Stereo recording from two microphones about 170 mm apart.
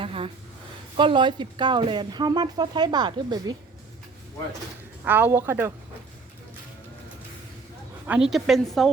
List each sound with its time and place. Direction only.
0.0 s a sound: 30° right (ahead or behind)
0.9 s speech: 30° right (ahead or behind)
5.0 s speech: 10° right (ahead or behind)
8.0 s a woman's voice: 5° right (ahead or behind)